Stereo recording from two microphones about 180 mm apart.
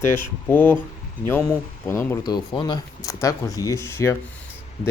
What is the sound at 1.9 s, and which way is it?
Speech, 15° left (ahead or behind).